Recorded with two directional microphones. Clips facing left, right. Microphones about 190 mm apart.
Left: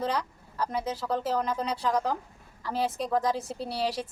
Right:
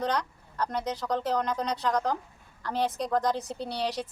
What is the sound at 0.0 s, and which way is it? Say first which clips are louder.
Speech: right 1 dB; 5° left (ahead or behind).